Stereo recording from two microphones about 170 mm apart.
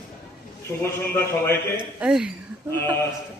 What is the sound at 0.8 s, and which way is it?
A man's voice, 15° left (ahead or behind).